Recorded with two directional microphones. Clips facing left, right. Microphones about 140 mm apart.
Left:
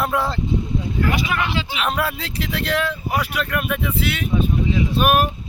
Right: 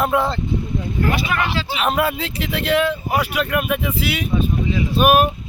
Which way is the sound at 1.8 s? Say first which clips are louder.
Right 5 dB; 5° right (ahead or behind).